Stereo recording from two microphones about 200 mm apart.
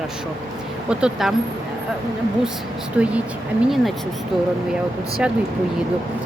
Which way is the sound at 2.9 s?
5° right (ahead or behind).